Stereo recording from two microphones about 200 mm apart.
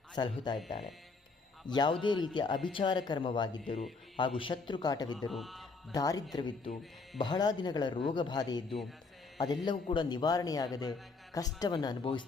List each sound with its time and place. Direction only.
0.2 s speech: 20° left (ahead or behind)
5.3 s speech: centre (ahead or behind)
5.9 s speech: 20° left (ahead or behind)